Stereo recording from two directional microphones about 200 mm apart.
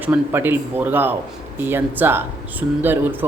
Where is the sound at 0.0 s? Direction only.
10° right (ahead or behind).